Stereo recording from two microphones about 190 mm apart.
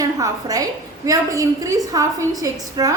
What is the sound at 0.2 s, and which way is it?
A woman's voice, 20° right (ahead or behind).